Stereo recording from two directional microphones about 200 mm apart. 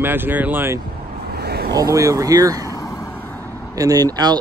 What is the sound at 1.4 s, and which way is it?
Vehicle, 55° right (ahead or behind).